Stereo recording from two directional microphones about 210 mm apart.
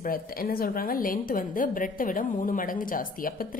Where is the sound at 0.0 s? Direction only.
45° left (ahead or behind).